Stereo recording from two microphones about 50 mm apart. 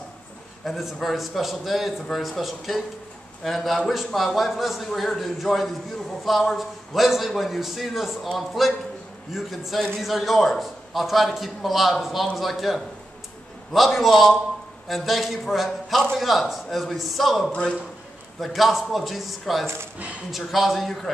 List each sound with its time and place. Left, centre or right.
0.7 s a man's voice: centre
17.5 s a man's voice: centre
18.4 s a man's voice: centre